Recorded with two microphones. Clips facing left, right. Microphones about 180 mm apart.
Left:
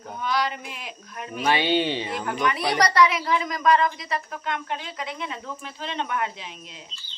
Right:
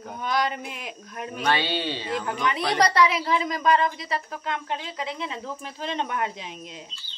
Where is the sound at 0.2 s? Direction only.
45° right (ahead or behind).